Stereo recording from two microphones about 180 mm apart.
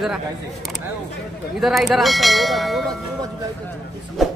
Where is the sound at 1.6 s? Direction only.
Centre (ahead or behind).